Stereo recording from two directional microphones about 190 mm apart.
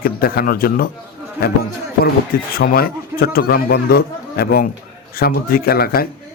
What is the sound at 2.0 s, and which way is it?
A man's voice, 50° left (ahead or behind).